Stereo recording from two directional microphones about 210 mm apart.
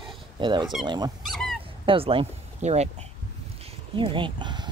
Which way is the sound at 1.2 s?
Centre (ahead or behind).